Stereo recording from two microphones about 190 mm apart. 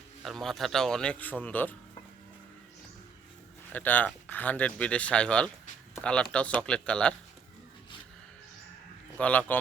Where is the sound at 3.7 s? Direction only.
10° left (ahead or behind).